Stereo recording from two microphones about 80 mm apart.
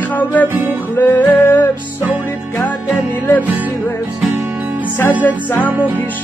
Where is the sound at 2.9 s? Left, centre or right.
Left.